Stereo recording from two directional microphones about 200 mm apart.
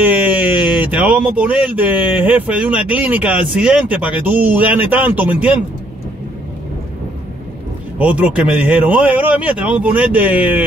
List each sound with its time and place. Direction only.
0.0 s a sound: 10° right (ahead or behind)
0.6 s speech: 10° right (ahead or behind)
8.0 s speech: 5° right (ahead or behind)